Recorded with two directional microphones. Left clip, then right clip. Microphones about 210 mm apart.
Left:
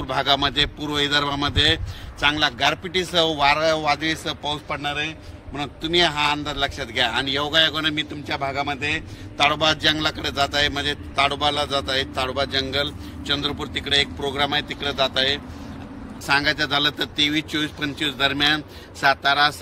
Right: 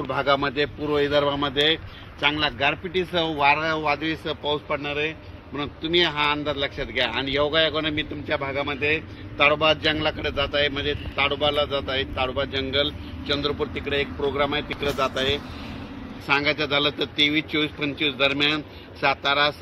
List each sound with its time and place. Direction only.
0.1 s a man's voice: 20° left (ahead or behind)
9.5 s a man's voice: 45° left (ahead or behind)
13.2 s a man's voice: 40° left (ahead or behind); by 14.7 s 20° left (ahead or behind)
16.3 s a man's voice: 20° left (ahead or behind)